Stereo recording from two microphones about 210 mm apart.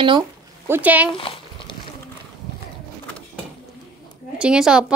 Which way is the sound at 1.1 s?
25° left (ahead or behind).